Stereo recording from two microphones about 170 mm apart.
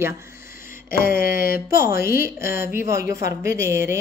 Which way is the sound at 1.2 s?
55° left (ahead or behind).